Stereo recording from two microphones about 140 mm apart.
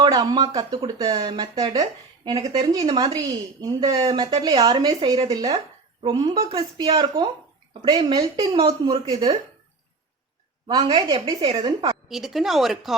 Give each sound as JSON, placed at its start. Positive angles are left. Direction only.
{"t": 0.0, "sound": "speech", "side_deg": -30}
{"t": 5.5, "sound": "a sound", "side_deg": -35}
{"t": 6.5, "sound": "speech", "side_deg": -35}
{"t": 10.7, "sound": "speech", "side_deg": -35}
{"t": 12.0, "sound": "speech", "side_deg": 0}